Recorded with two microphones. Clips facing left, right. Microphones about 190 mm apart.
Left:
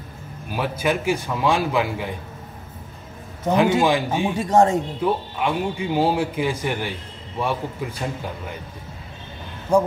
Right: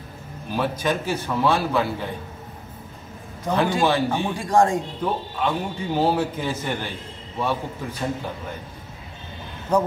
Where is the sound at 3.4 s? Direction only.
20° left (ahead or behind).